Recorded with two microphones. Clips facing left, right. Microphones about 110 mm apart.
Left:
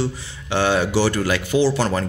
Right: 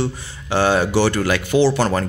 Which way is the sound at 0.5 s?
40° right (ahead or behind).